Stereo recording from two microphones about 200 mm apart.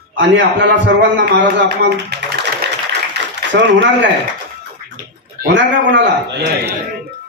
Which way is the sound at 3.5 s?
65° right (ahead or behind).